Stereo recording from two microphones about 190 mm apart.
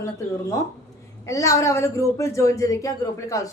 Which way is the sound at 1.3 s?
15° left (ahead or behind).